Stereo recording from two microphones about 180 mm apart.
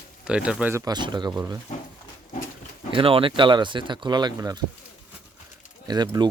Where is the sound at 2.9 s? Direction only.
30° right (ahead or behind).